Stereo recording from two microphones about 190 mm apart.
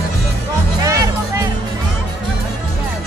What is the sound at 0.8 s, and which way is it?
Music, 15° right (ahead or behind).